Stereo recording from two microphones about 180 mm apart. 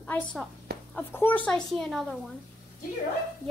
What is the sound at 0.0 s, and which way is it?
A woman's voice, 5° left (ahead or behind).